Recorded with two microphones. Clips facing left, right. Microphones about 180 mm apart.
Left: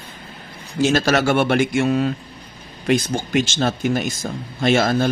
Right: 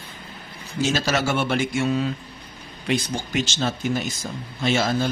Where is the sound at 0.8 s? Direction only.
55° left (ahead or behind).